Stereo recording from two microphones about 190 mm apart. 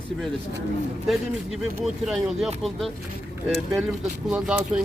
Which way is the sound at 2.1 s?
Centre (ahead or behind).